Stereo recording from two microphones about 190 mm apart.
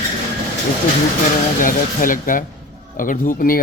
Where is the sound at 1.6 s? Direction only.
45° left (ahead or behind).